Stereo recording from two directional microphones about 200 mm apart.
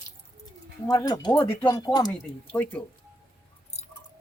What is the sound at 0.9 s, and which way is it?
Speech, 20° left (ahead or behind).